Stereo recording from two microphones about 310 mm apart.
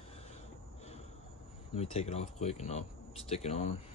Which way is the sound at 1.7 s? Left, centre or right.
Centre.